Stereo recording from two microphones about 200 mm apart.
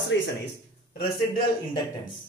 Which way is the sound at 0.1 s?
65° left (ahead or behind).